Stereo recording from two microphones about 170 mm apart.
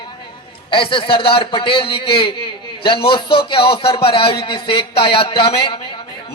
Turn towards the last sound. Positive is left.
turn(degrees=30)  # may be behind; listen again after turning